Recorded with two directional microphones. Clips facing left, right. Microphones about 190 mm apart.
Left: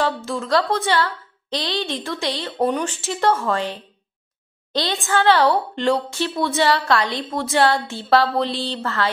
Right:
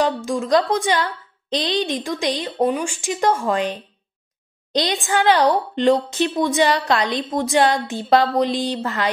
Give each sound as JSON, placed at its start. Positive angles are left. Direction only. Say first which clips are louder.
{"t": 0.0, "sound": "a woman's voice", "louder": "right 3 dB", "side_deg": -15}